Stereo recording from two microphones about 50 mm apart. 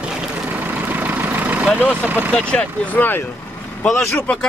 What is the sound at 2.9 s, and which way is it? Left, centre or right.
Speech, left.